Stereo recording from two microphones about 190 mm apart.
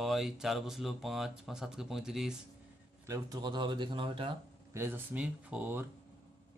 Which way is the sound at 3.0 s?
15° right (ahead or behind).